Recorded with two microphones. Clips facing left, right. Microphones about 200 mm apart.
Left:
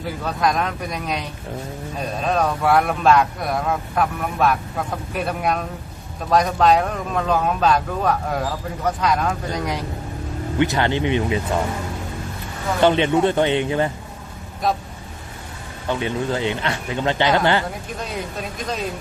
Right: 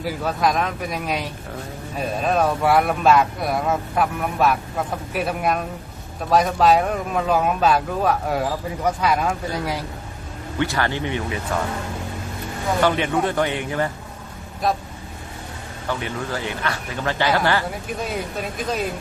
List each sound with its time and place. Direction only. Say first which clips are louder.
0.0 s a man's voice: right 1 dB; 5° right (ahead or behind)
10.6 s speech: left 3 dB; 20° left (ahead or behind)
12.8 s speech: left 5 dB; 25° left (ahead or behind)
15.9 s speech: left 4 dB; 20° left (ahead or behind)